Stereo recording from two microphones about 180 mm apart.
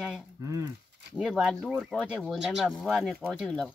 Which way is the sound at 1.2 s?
5° right (ahead or behind).